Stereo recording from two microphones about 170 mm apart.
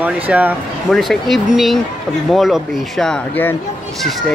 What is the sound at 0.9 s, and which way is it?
Speech, centre (ahead or behind).